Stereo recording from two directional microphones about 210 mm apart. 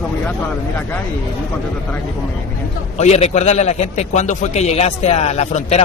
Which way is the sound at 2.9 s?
30° left (ahead or behind).